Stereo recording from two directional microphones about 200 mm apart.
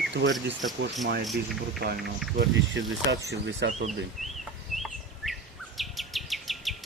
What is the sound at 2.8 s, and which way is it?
Speech, 60° right (ahead or behind).